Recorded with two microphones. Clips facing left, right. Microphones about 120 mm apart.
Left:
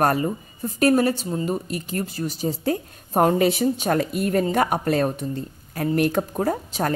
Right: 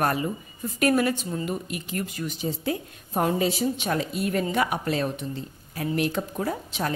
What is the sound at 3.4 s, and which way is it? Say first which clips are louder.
Speech: left 5 dB; 60° left (ahead or behind).